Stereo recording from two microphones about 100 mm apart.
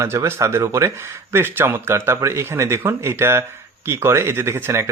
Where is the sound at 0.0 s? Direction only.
25° right (ahead or behind).